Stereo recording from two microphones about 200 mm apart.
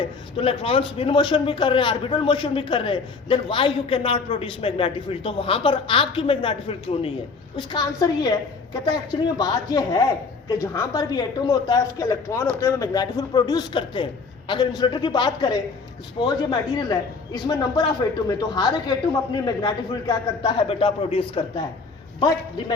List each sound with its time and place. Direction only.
0.0 s a man's voice: 30° left (ahead or behind)